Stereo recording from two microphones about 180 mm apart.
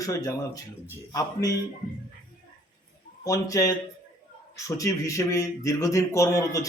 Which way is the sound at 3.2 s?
20° left (ahead or behind).